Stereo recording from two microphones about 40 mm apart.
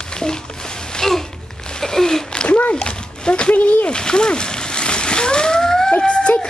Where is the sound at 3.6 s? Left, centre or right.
Left.